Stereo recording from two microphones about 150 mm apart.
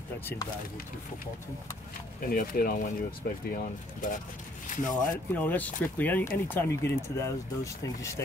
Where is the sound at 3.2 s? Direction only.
80° left.